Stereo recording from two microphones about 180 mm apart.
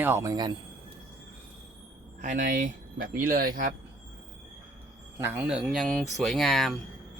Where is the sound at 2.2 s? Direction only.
45° right (ahead or behind).